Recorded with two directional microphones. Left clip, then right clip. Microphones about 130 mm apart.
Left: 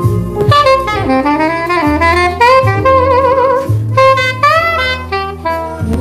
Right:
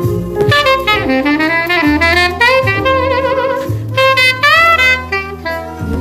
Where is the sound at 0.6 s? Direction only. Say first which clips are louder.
Left 1 dB; 10° right (ahead or behind).